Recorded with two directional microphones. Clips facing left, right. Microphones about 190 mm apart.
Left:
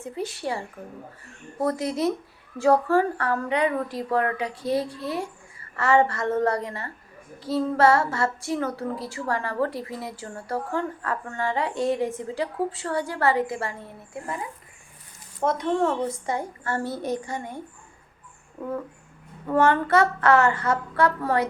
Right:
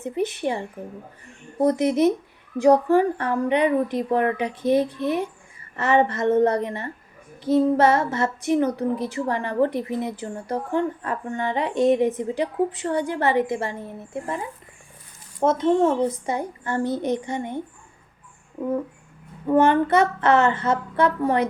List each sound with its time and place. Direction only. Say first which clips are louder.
0.0 s speech: right 6 dB; 20° right (ahead or behind)
15.4 s speech: right 5 dB; 25° right (ahead or behind)
18.6 s a sound: right 6 dB; 5° right (ahead or behind)
19.5 s speech: right 3 dB; 20° right (ahead or behind)